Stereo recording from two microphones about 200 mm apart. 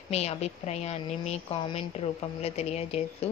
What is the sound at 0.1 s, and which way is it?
A woman's voice, 30° left (ahead or behind).